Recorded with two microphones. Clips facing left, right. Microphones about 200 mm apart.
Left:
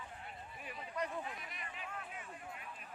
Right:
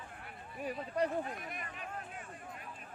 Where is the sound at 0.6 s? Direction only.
40° right (ahead or behind).